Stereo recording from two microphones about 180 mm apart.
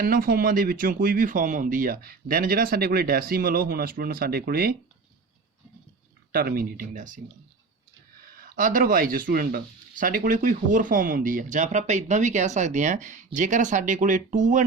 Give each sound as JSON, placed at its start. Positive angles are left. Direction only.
{"t": 0.0, "sound": "speech", "side_deg": -50}
{"t": 6.3, "sound": "speech", "side_deg": -55}
{"t": 8.5, "sound": "speech", "side_deg": -50}